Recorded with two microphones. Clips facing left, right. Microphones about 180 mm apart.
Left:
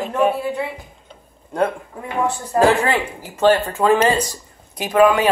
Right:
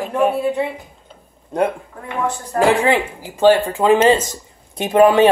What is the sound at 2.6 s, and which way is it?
Speech, 15° right (ahead or behind).